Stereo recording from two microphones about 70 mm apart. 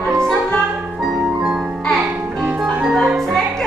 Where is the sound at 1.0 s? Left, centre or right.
Centre.